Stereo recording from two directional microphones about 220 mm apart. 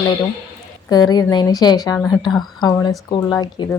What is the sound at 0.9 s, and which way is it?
Speech, 20° left (ahead or behind).